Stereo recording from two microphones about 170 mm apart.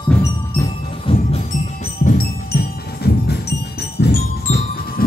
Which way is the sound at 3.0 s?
70° left (ahead or behind).